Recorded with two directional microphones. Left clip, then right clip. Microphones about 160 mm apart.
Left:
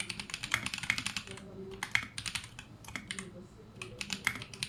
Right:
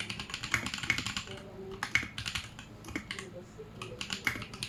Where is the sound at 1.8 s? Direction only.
20° left (ahead or behind).